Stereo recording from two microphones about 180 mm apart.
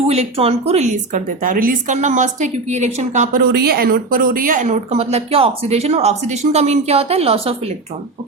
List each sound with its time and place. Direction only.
0.1 s a woman's voice: 35° right (ahead or behind)
3.4 s a woman's voice: 60° right (ahead or behind); by 7.7 s 35° right (ahead or behind)